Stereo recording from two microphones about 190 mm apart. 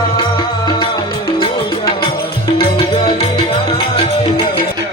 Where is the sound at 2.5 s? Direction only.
30° left (ahead or behind).